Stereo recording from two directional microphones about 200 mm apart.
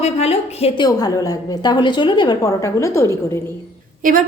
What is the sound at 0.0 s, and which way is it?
Speech, 30° left (ahead or behind).